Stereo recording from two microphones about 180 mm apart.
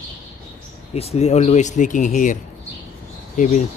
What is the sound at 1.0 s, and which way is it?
Speech, 35° left (ahead or behind).